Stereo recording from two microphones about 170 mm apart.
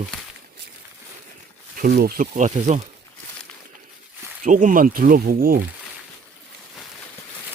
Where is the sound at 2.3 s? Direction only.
45° right (ahead or behind).